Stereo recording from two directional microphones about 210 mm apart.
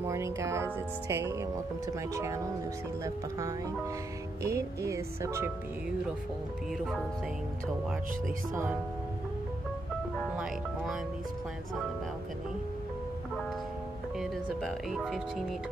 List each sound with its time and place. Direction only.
0.0 s speech: 15° right (ahead or behind)
10.3 s speech: 5° right (ahead or behind)
14.1 s speech: centre (ahead or behind)